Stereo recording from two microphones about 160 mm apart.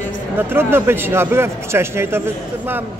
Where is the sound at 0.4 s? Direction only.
15° right (ahead or behind).